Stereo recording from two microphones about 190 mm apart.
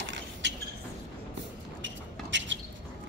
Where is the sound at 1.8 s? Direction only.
75° right (ahead or behind).